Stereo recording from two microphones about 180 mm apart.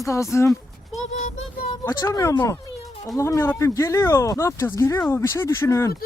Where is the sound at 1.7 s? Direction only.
20° left (ahead or behind).